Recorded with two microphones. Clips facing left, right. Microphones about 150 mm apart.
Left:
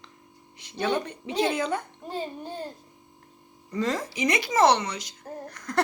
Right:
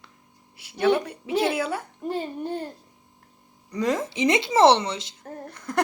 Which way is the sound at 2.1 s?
60° right (ahead or behind).